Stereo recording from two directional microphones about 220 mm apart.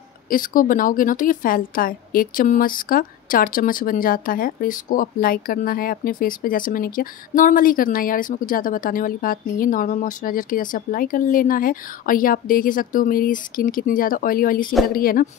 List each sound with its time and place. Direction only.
0.3 s a woman's voice: 40° left (ahead or behind)